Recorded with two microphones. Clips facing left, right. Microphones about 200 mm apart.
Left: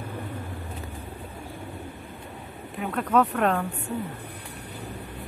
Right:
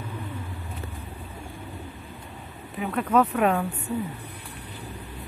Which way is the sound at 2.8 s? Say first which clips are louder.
Right 1 dB; centre (ahead or behind).